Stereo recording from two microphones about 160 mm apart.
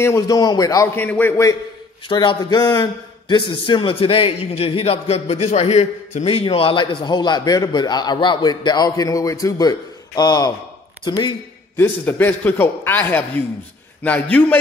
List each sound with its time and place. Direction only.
0.0 s a man's voice: 20° left (ahead or behind)
1.0 s a man's voice: 10° left (ahead or behind)
11.7 s a man's voice: 15° left (ahead or behind)